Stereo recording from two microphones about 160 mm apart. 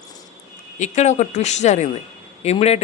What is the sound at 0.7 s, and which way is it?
Speech, 50° left (ahead or behind).